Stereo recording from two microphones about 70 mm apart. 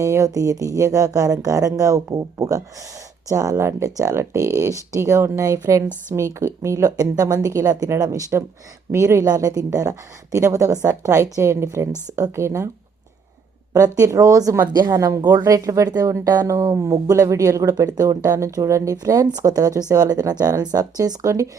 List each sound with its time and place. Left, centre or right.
0.0 s speech: right
3.5 s speech: right
6.9 s speech: right
8.9 s speech: right
10.3 s speech: right
13.7 s speech: right
16.2 s speech: right
16.5 s speech: right
19.3 s speech: right